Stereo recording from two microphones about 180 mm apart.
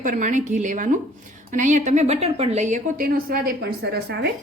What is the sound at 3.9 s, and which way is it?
Speech, 65° right (ahead or behind).